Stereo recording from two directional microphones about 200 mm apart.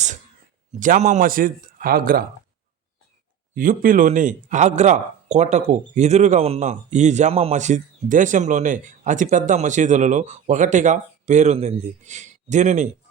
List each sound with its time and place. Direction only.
0.8 s speech: 40° right (ahead or behind)
3.5 s a man's voice: 45° right (ahead or behind)